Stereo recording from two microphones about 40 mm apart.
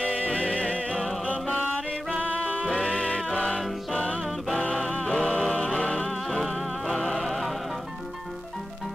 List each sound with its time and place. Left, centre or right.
0.2 s music: left
2.6 s music: left
5.1 s music: centre
6.0 s music: centre